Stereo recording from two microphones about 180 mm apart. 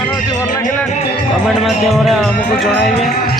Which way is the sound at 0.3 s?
20° left (ahead or behind).